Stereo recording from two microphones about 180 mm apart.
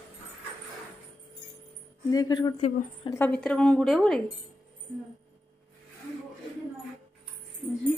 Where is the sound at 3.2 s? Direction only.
5° left (ahead or behind).